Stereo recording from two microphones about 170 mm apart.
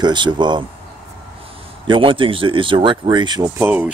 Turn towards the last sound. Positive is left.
turn(degrees=-10)  # may be behind; listen again after turning